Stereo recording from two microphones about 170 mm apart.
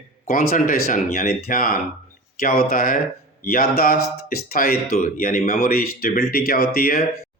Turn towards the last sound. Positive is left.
turn(degrees=60)  # may be behind; listen again after turning